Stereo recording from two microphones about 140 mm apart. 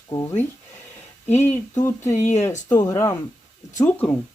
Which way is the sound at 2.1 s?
55° left (ahead or behind).